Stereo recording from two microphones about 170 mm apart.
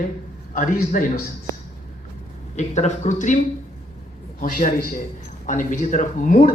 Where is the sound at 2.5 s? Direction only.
40° left (ahead or behind).